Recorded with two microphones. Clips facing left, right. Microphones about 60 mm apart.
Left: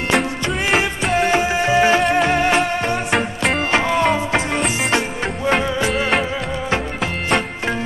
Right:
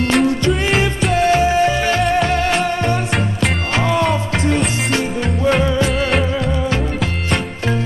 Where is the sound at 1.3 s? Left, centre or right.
Left.